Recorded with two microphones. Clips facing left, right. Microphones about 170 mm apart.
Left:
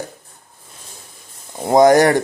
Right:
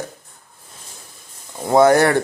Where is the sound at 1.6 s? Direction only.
15° left (ahead or behind).